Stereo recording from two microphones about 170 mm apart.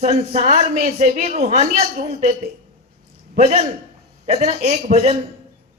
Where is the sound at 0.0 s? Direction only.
40° right (ahead or behind).